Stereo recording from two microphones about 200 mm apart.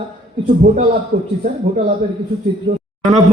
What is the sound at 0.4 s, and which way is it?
A man's voice, 45° right (ahead or behind).